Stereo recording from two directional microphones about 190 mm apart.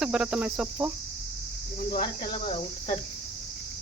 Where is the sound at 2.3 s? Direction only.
30° left (ahead or behind).